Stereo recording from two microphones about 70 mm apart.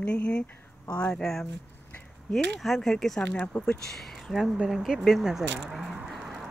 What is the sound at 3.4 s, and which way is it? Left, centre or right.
Speech, left.